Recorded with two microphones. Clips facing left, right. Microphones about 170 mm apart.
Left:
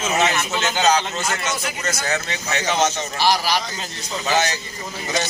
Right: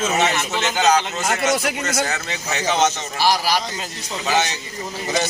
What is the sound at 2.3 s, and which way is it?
Speech, centre (ahead or behind).